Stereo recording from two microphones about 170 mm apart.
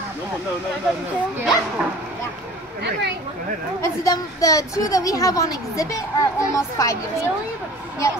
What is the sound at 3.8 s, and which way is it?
A child's voice, 20° left (ahead or behind).